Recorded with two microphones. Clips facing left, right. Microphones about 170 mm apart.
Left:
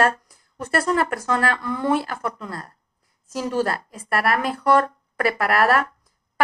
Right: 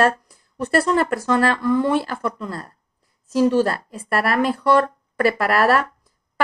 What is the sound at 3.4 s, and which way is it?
Speech, 30° right (ahead or behind).